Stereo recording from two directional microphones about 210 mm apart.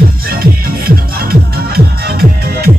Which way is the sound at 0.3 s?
45° right (ahead or behind).